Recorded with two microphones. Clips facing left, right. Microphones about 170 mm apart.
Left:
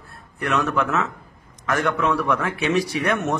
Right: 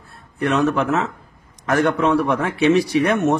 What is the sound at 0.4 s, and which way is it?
Speech, 30° right (ahead or behind).